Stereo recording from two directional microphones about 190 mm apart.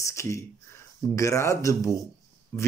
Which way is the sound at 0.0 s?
15° left (ahead or behind).